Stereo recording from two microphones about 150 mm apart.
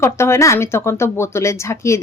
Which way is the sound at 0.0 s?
20° left (ahead or behind).